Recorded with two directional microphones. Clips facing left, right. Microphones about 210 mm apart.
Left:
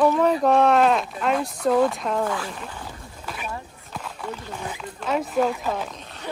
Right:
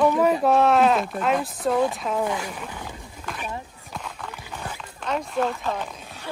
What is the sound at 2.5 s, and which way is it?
Speech, 5° right (ahead or behind).